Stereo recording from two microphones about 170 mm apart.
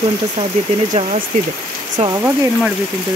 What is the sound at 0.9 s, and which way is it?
Speech, 45° right (ahead or behind).